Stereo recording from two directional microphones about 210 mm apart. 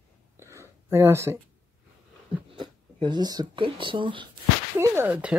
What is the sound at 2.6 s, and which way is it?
Speech, 20° right (ahead or behind).